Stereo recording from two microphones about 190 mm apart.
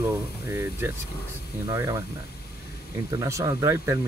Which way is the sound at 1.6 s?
15° right (ahead or behind).